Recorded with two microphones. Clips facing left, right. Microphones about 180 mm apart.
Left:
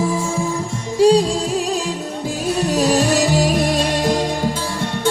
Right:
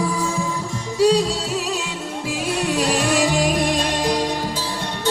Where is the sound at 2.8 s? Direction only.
40° left (ahead or behind).